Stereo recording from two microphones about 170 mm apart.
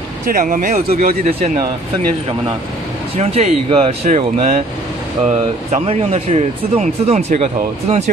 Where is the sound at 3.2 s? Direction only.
40° right (ahead or behind).